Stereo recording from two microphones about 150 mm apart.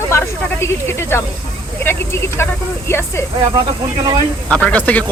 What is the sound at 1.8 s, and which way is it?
Speech, 15° left (ahead or behind).